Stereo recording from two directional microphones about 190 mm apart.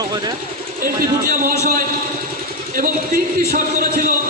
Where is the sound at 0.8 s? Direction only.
50° right (ahead or behind).